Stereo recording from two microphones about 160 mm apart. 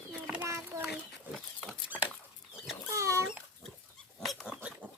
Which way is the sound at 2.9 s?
20° right (ahead or behind).